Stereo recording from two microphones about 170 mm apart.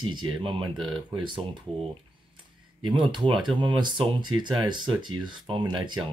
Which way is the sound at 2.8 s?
30° right (ahead or behind).